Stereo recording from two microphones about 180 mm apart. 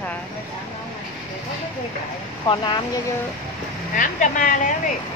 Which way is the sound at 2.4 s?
25° left (ahead or behind).